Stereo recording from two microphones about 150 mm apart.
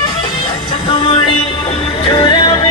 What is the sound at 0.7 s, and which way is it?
Music, 35° left (ahead or behind).